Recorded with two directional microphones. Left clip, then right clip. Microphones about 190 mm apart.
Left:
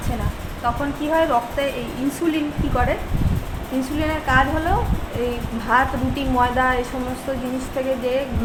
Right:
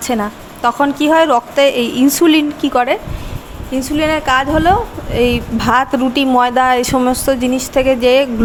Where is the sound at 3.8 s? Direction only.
45° right (ahead or behind).